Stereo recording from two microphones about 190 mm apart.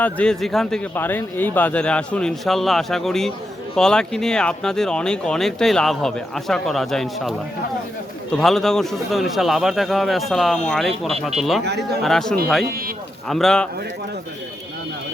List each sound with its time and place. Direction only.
0.0 s speech: 5° left (ahead or behind)
12.6 s speech: 55° right (ahead or behind)
13.2 s speech: centre (ahead or behind)